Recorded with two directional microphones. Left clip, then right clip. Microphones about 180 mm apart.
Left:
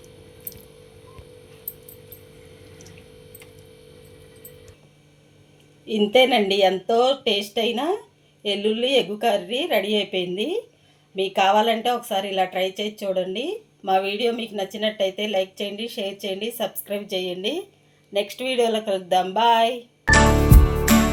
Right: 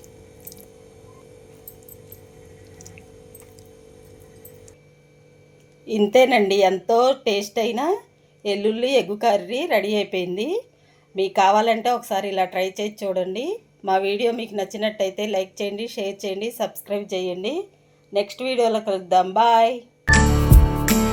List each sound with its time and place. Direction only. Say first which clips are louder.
5.8 s a woman's voice: right 1 dB; 20° right (ahead or behind)
20.1 s music: left 1 dB; centre (ahead or behind)